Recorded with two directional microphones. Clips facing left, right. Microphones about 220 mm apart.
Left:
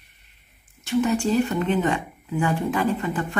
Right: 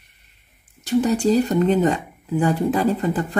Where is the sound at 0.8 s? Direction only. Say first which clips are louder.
Right 3 dB; 40° right (ahead or behind).